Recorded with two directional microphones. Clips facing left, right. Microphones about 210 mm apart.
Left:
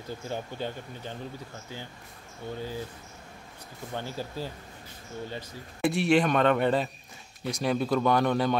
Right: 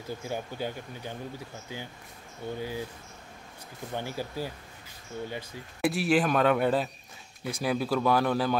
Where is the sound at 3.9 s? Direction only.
15° right (ahead or behind).